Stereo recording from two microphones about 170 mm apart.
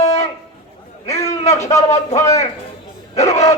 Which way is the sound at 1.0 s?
20° left (ahead or behind).